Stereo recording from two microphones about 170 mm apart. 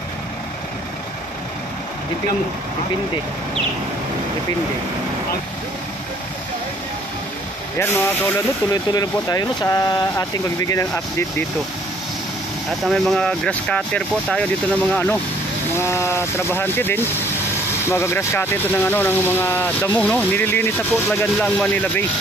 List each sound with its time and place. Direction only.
7.8 s speech: 10° left (ahead or behind)
12.8 s speech: centre (ahead or behind)